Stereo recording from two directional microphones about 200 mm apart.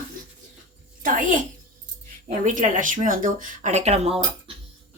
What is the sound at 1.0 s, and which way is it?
Speech, 40° right (ahead or behind).